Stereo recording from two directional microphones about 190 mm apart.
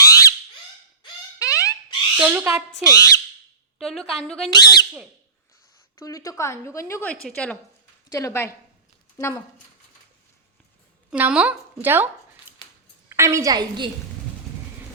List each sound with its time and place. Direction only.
0.0 s a sound: 15° left (ahead or behind)
1.4 s a sound: 15° left (ahead or behind)
2.1 s speech: 10° right (ahead or behind)
2.8 s a woman's voice: 15° left (ahead or behind)
3.8 s a woman's voice: centre (ahead or behind)
6.0 s a woman's voice: 20° left (ahead or behind)
11.1 s speech: 5° right (ahead or behind)
13.1 s a woman's voice: 15° right (ahead or behind)